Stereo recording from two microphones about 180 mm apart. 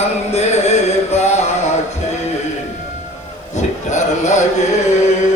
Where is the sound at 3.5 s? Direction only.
40° left (ahead or behind).